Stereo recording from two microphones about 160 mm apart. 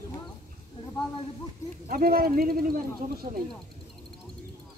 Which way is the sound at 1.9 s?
70° right (ahead or behind).